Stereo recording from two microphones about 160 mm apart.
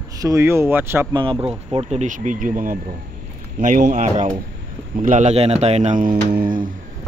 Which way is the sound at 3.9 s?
50° right (ahead or behind).